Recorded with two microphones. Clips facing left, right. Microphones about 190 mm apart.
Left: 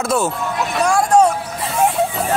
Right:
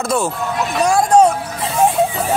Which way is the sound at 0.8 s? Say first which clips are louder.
Right 2 dB; 15° right (ahead or behind).